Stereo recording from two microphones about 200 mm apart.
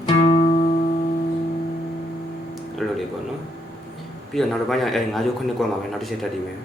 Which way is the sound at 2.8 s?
Centre (ahead or behind).